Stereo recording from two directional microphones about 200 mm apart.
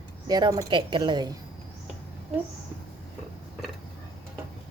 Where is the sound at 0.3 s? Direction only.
20° right (ahead or behind).